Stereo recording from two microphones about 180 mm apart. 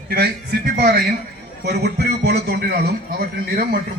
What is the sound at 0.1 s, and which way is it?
Speech, 60° right (ahead or behind).